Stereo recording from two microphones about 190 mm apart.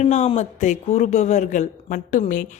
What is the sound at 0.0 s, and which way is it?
Speech, 35° left (ahead or behind).